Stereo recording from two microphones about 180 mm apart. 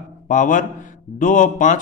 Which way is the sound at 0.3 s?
45° left (ahead or behind).